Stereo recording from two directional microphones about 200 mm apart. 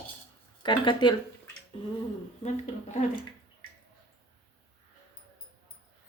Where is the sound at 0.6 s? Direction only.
25° left (ahead or behind).